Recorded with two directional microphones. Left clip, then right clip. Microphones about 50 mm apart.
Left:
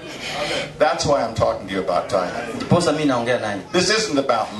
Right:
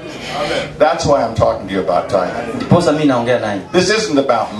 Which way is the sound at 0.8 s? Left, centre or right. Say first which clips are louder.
Right 5 dB; centre.